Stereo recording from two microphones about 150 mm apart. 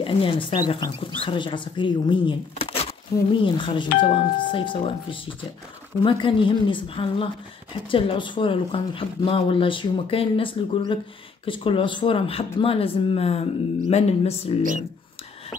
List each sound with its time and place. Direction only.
0.0 s speech: 35° left (ahead or behind)
3.1 s speech: 20° left (ahead or behind)
3.4 s speech: 35° left (ahead or behind)